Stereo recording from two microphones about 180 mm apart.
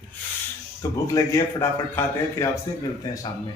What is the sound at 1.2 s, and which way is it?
Speech, 20° left (ahead or behind).